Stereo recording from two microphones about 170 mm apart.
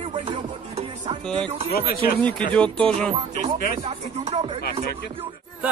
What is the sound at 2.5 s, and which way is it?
Speech, 5° left (ahead or behind).